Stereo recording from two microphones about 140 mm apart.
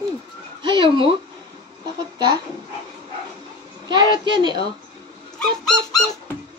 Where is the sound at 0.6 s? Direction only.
35° right (ahead or behind).